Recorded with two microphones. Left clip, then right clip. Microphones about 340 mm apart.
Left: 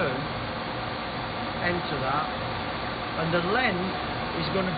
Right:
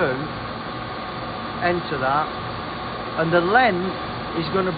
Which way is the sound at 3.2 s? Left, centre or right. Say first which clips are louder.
Right 8 dB; centre.